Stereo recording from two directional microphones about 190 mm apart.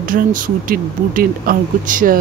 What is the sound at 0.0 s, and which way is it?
Speech, 45° right (ahead or behind).